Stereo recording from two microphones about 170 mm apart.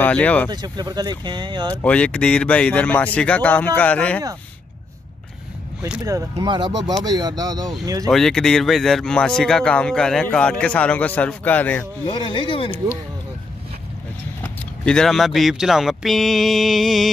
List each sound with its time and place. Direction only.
0.0 s speech: 10° left (ahead or behind)
0.5 s speech: 25° right (ahead or behind)
1.8 s speech: 5° left (ahead or behind)
6.0 s speech: 25° right (ahead or behind)
8.1 s speech: 5° left (ahead or behind)
12.1 s speech: 30° left (ahead or behind)
14.4 s speech: 5° left (ahead or behind)